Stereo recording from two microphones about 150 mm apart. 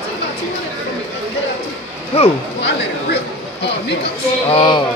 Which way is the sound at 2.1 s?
40° left (ahead or behind).